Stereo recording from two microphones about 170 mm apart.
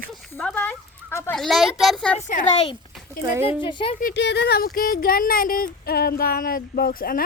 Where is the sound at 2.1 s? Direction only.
45° left (ahead or behind).